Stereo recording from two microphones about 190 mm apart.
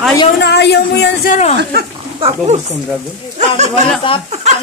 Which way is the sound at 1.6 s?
55° right (ahead or behind).